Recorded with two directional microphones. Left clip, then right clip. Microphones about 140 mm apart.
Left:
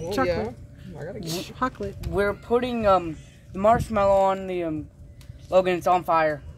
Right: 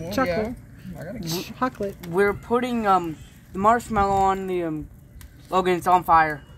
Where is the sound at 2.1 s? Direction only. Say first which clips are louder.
Right 2 dB; 50° left (ahead or behind).